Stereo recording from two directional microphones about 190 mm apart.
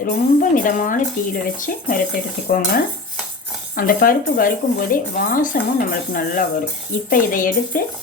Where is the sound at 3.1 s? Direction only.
Centre (ahead or behind).